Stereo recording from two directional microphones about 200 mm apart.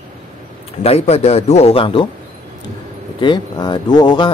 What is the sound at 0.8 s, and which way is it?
A man's voice, 30° left (ahead or behind).